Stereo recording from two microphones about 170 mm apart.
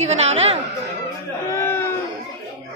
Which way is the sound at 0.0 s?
40° right (ahead or behind).